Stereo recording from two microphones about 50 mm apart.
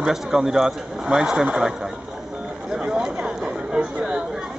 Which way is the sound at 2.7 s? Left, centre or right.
Centre.